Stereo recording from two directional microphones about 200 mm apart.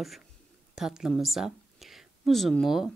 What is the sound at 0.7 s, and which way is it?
A woman's voice, centre (ahead or behind).